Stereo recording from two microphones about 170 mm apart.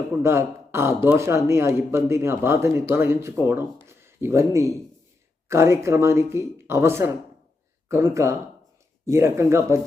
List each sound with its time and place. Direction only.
0.2 s speech: 15° right (ahead or behind)
3.8 s a sound: 15° right (ahead or behind)
5.5 s speech: 15° right (ahead or behind)